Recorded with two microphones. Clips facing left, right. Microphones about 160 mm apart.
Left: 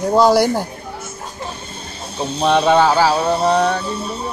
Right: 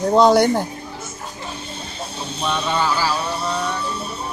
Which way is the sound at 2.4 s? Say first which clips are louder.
Left 9 dB; 65° left (ahead or behind).